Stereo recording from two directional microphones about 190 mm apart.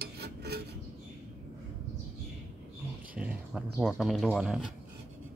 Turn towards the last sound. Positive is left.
turn(degrees=0)  # may be behind; listen again after turning